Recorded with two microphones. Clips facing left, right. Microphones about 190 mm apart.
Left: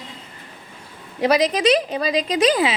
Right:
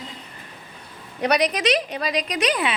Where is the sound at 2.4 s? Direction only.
90° left.